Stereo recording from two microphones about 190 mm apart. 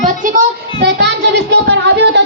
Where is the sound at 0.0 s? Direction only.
50° right (ahead or behind).